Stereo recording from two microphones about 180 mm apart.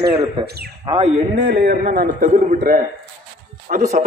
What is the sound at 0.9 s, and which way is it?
Speech, 35° right (ahead or behind).